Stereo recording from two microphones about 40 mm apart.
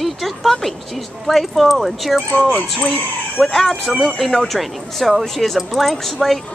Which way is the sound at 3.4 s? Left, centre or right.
Centre.